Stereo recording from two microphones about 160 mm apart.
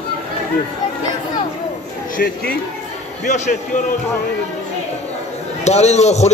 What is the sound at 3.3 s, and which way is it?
Speech, 50° left (ahead or behind).